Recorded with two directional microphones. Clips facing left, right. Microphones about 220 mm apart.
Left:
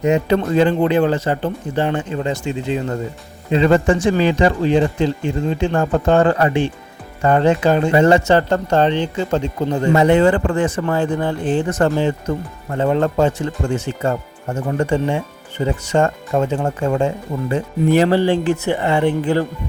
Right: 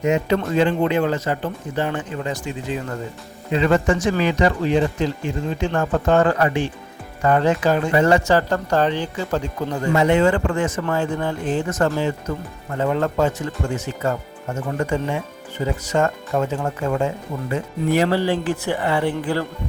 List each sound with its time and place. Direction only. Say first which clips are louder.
0.0 s speech: left 3 dB; 35° left (ahead or behind)
9.9 s speech: left 3 dB; 35° left (ahead or behind)